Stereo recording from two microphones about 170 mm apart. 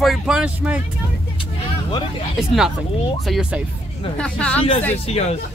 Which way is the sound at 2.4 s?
Centre (ahead or behind).